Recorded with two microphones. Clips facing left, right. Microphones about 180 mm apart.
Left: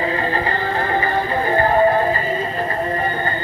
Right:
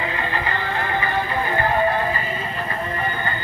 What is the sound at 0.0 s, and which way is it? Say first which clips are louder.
Music: left 5 dB; 35° left (ahead or behind).